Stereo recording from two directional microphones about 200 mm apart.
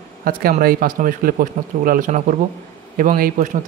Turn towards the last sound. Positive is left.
turn(degrees=-40)  # may be behind; listen again after turning